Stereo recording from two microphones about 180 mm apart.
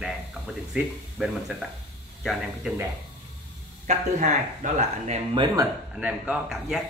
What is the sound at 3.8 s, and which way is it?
Speech, 45° right (ahead or behind).